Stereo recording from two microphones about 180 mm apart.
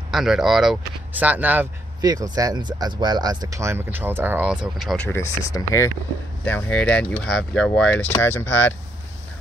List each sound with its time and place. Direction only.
0.1 s speech: centre (ahead or behind)
5.0 s speech: 15° left (ahead or behind)